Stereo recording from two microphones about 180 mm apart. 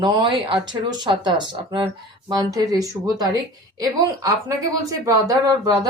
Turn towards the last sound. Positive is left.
turn(degrees=-20)  # may be behind; listen again after turning